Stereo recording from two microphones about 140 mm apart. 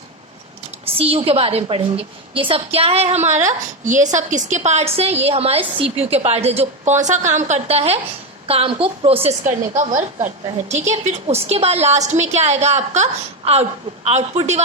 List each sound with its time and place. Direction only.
0.9 s a woman's voice: 45° right (ahead or behind)
9.4 s a woman's voice: 60° right (ahead or behind)